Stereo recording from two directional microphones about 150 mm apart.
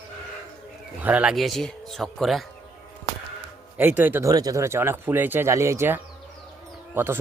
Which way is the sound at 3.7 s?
10° right (ahead or behind).